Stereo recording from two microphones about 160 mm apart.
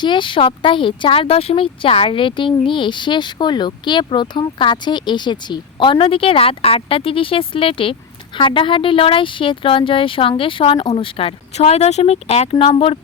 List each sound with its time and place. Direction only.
0.0 s speech: 30° left (ahead or behind)